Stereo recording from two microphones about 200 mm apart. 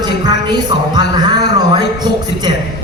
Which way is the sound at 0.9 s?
20° right (ahead or behind).